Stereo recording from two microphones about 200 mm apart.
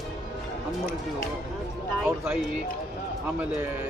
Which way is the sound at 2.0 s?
Centre (ahead or behind).